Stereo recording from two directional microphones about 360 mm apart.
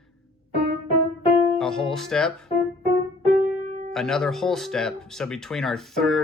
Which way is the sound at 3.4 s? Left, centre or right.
Right.